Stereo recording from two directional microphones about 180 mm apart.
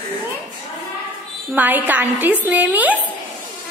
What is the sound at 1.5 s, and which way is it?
A woman's voice, 10° right (ahead or behind).